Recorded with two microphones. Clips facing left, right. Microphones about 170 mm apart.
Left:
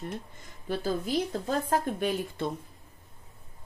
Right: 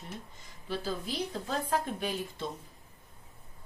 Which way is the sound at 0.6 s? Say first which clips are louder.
Left 5 dB; 50° left (ahead or behind).